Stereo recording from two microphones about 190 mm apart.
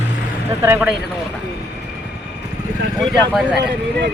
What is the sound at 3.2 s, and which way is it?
Speech, centre (ahead or behind).